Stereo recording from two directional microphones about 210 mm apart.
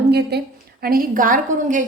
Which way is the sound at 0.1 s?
50° right (ahead or behind).